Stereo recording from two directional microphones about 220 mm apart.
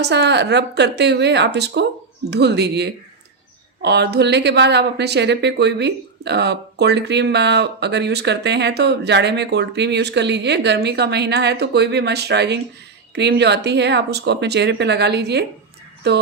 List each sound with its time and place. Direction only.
0.0 s speech: 50° right (ahead or behind)